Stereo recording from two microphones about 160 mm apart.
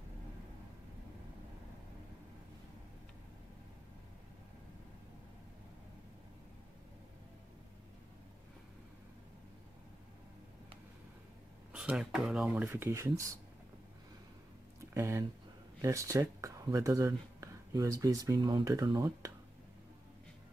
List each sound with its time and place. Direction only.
11.7 s speech: 5° right (ahead or behind)
12.4 s speech: 15° right (ahead or behind)
15.0 s speech: 15° right (ahead or behind)